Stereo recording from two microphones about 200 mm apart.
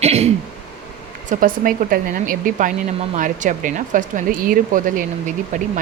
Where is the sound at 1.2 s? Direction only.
40° right (ahead or behind).